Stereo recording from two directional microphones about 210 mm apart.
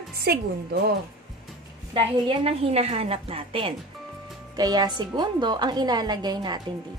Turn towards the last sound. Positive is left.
turn(degrees=-20)  # may be behind; listen again after turning